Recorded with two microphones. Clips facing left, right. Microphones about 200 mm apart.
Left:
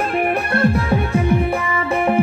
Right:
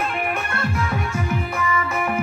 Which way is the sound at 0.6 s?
35° left (ahead or behind).